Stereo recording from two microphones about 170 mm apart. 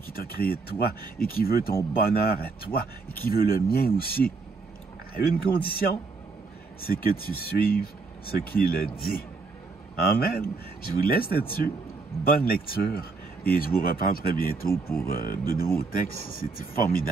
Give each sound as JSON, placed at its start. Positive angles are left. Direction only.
{"t": 0.1, "sound": "speech", "side_deg": 60}